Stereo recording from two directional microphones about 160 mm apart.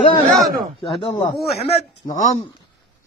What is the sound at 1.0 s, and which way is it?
Speech, 35° left (ahead or behind).